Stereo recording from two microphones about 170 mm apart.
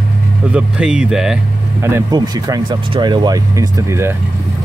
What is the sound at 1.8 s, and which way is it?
Speech, 15° right (ahead or behind).